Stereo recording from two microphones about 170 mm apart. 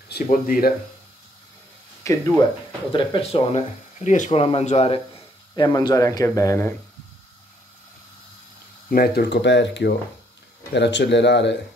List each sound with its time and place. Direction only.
0.1 s speech: 60° left (ahead or behind)
2.0 s speech: 15° left (ahead or behind)
2.9 s speech: 30° left (ahead or behind)
5.6 s speech: 25° left (ahead or behind)
8.9 s speech: 70° left (ahead or behind); by 11.5 s 90° left